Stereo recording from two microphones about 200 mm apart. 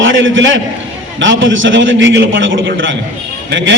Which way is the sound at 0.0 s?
70° right (ahead or behind).